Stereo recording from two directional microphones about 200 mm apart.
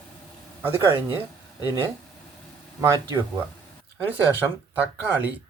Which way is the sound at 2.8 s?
15° right (ahead or behind).